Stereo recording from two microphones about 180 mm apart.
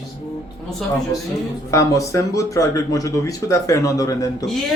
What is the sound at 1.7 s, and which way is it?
Speech, 15° left (ahead or behind).